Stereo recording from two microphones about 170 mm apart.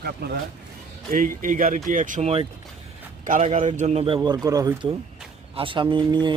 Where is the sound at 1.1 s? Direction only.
50° right (ahead or behind).